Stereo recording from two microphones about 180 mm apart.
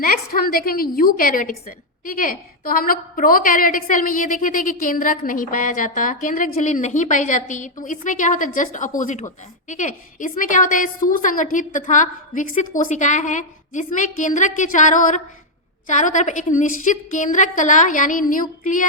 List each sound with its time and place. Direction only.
0.0 s a woman's voice: 55° left (ahead or behind)